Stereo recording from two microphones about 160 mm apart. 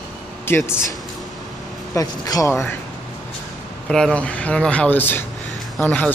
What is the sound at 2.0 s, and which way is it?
Speech, 20° left (ahead or behind).